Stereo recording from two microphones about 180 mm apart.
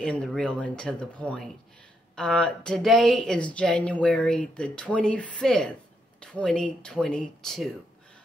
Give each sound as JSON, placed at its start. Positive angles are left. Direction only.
{"t": 0.0, "sound": "speech", "side_deg": 5}